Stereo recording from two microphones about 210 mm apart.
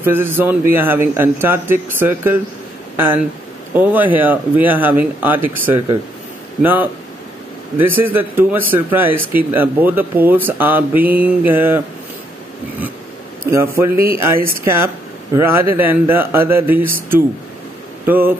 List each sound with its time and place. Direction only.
0.0 s a man's voice: 10° right (ahead or behind)
3.7 s a man's voice: 10° right (ahead or behind)
8.0 s a man's voice: 10° right (ahead or behind)
13.5 s a man's voice: 15° right (ahead or behind)